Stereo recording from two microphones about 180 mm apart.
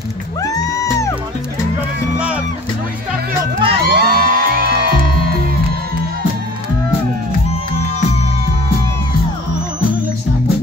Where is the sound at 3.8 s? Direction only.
55° right (ahead or behind).